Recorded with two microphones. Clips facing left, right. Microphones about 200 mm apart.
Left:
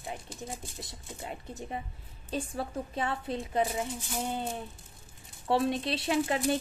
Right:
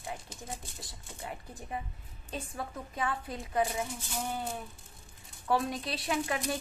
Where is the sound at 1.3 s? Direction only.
25° left (ahead or behind).